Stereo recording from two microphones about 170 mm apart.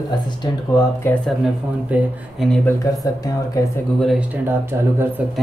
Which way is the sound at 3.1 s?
20° left (ahead or behind).